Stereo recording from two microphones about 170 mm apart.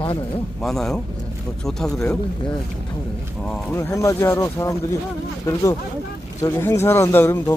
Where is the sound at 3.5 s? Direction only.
15° left (ahead or behind).